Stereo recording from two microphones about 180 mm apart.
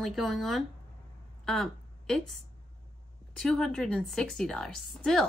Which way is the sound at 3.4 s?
5° left (ahead or behind).